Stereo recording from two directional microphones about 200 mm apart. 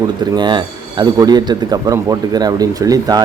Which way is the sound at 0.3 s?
20° right (ahead or behind).